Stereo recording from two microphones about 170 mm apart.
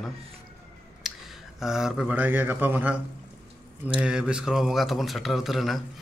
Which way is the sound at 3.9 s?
5° right (ahead or behind).